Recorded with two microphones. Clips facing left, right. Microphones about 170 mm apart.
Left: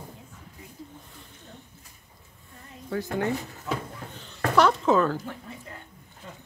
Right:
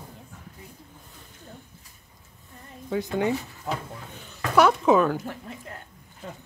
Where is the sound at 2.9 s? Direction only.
15° right (ahead or behind).